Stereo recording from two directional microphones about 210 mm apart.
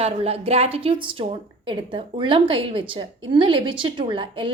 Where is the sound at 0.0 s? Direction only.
30° right (ahead or behind).